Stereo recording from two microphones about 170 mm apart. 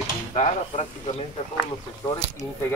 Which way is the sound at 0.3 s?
40° left (ahead or behind).